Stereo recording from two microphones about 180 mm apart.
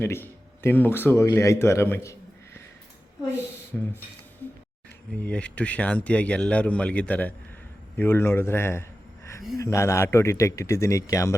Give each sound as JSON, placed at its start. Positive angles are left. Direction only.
{"t": 0.0, "sound": "a man's voice", "side_deg": 15}
{"t": 3.7, "sound": "speech", "side_deg": 5}
{"t": 5.2, "sound": "a man's voice", "side_deg": 5}